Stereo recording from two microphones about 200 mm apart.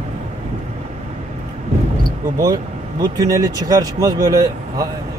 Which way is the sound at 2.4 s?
20° right (ahead or behind).